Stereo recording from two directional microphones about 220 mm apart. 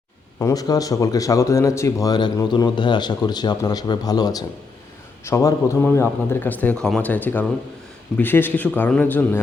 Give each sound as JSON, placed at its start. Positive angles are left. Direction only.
{"t": 0.3, "sound": "speech", "side_deg": 15}